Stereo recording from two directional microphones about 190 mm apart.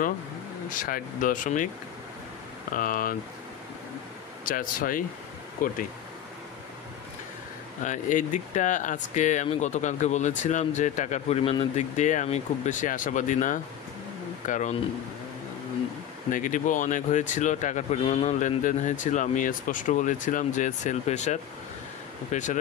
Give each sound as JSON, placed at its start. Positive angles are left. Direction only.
{"t": 0.7, "sound": "speech", "side_deg": 45}
{"t": 2.7, "sound": "speech", "side_deg": 45}
{"t": 4.5, "sound": "speech", "side_deg": 45}
{"t": 7.8, "sound": "speech", "side_deg": 40}
{"t": 16.3, "sound": "speech", "side_deg": 45}